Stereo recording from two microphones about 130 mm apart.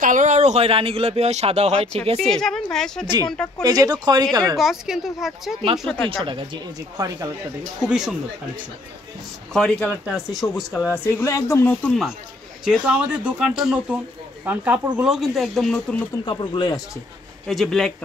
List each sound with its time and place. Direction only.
0.0 s speech: 75° right (ahead or behind); by 2.0 s 50° right (ahead or behind)
2.3 s speech: 5° left (ahead or behind)
3.6 s speech: 30° right (ahead or behind)
4.6 s speech: 5° right (ahead or behind)
6.0 s speech: 40° right (ahead or behind)
7.8 s speech: 5° right (ahead or behind)
9.5 s speech: 5° left (ahead or behind)
10.4 s speech: 20° left (ahead or behind)
11.7 s speech: 10° left (ahead or behind)
12.6 s speech: 10° right (ahead or behind)
16.3 s speech: 35° left (ahead or behind)
17.5 s speech: centre (ahead or behind)